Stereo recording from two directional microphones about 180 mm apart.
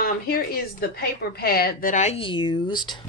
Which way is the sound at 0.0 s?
55° left (ahead or behind).